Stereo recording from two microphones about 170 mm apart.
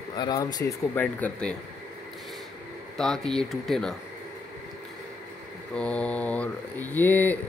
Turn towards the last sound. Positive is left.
turn(degrees=10)  # may be behind; listen again after turning